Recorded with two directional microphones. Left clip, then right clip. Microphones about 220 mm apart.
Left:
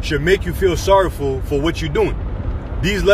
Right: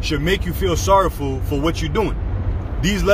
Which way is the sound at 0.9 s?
15° right (ahead or behind).